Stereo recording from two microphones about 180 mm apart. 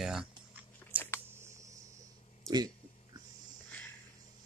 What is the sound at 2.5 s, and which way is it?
Speech, 20° right (ahead or behind).